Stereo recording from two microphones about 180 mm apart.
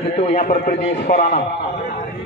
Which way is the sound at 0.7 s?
65° left (ahead or behind).